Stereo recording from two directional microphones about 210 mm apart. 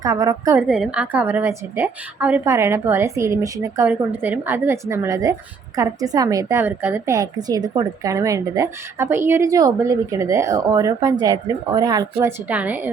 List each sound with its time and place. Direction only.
0.0 s a woman's voice: 15° right (ahead or behind)
0.7 s a woman's voice: 5° right (ahead or behind)
12.5 s a woman's voice: 5° right (ahead or behind)